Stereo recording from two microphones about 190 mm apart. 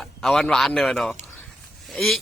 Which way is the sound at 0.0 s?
Centre (ahead or behind).